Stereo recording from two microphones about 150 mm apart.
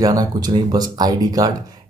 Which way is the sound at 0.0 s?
25° right (ahead or behind).